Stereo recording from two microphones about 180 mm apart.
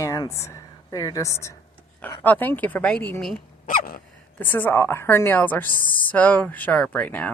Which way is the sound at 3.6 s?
50° left (ahead or behind).